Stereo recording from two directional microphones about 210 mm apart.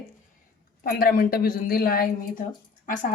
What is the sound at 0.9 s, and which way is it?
A woman's voice, 45° left (ahead or behind).